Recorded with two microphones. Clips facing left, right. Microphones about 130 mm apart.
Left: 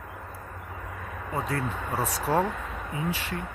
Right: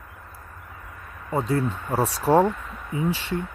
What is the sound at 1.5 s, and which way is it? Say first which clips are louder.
Speech: right 5 dB; 30° right (ahead or behind).